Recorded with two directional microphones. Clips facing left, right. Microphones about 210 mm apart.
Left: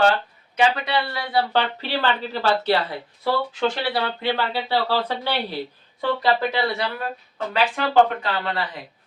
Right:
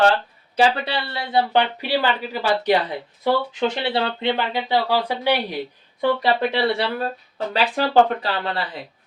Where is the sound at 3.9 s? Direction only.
25° right (ahead or behind).